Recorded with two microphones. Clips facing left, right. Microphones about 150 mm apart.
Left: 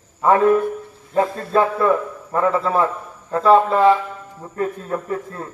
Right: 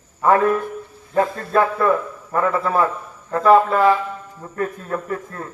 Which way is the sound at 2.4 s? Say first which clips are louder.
Left 1 dB; 25° left (ahead or behind).